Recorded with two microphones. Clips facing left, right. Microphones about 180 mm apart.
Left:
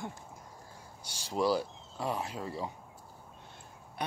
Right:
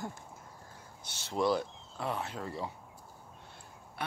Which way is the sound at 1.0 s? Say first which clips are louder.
Even; 10° left (ahead or behind).